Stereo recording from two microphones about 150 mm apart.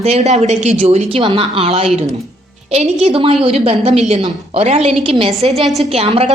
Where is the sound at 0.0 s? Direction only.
45° right (ahead or behind).